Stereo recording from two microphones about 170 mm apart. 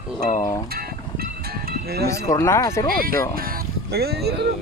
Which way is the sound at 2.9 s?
60° right (ahead or behind).